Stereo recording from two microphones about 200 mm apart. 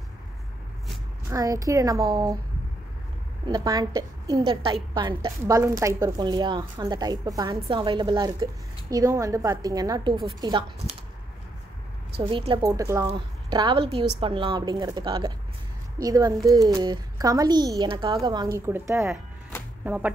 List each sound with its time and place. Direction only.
1.3 s a woman's voice: 15° right (ahead or behind)
3.4 s a woman's voice: 20° right (ahead or behind)
12.2 s a woman's voice: 25° right (ahead or behind); by 20.1 s 10° right (ahead or behind)